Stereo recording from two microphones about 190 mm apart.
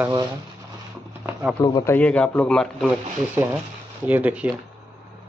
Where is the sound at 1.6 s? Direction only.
20° left (ahead or behind); by 2.9 s 5° left (ahead or behind).